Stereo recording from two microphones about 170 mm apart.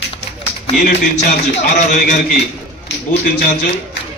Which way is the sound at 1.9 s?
55° left (ahead or behind).